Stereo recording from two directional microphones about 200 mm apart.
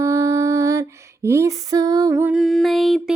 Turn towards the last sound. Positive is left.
turn(degrees=0)  # may be behind; listen again after turning